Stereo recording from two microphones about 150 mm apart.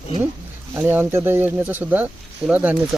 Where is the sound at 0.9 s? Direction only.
15° right (ahead or behind).